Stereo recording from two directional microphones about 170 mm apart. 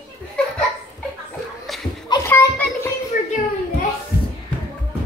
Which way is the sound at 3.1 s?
55° left (ahead or behind).